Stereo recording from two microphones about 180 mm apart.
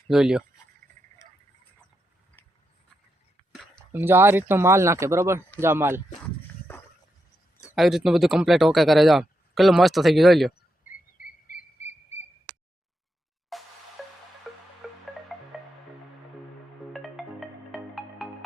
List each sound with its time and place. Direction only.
0.1 s speech: 5° right (ahead or behind)
1.2 s a sound: 15° left (ahead or behind)
2.4 s a sound: 10° left (ahead or behind)
3.9 s speech: 10° right (ahead or behind)
7.8 s speech: centre (ahead or behind)
10.8 s cricket: 50° left (ahead or behind)
11.9 s a sound: 35° left (ahead or behind)
13.5 s music: centre (ahead or behind)
16.9 s music: centre (ahead or behind)